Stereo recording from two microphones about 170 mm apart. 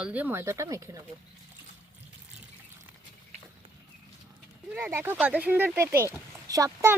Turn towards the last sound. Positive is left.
turn(degrees=-20)  # may be behind; listen again after turning